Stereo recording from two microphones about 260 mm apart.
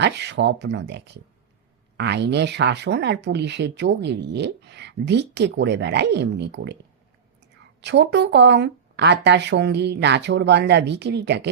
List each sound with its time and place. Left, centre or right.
0.0 s speech: right
7.8 s speech: right